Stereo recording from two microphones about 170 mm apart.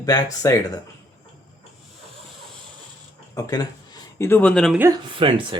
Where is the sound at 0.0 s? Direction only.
20° left (ahead or behind).